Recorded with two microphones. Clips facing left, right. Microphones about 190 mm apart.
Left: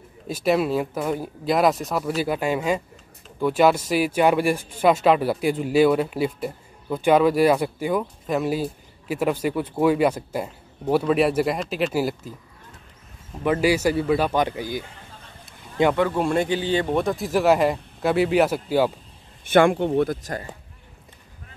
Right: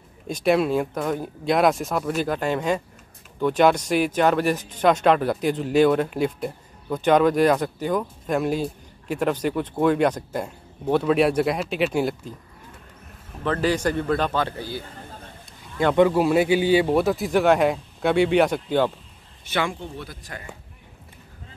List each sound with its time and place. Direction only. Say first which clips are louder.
0.3 s speech: right 1 dB; 5° left (ahead or behind)
13.4 s speech: left 3 dB; 10° left (ahead or behind)
15.0 s a sound: right 5 dB; 45° right (ahead or behind)
16.1 s speech: right 3 dB; 5° right (ahead or behind)
19.4 s speech: left 10 dB; 50° left (ahead or behind)
20.1 s speech: left 11 dB; 40° left (ahead or behind)